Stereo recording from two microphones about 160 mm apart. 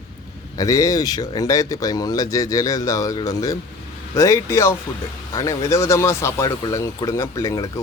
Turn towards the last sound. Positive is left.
turn(degrees=20)  # may be behind; listen again after turning